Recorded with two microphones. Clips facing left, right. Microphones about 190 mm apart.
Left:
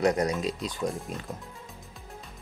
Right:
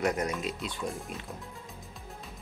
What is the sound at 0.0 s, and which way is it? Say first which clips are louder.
Speech: left 5 dB; 35° left (ahead or behind).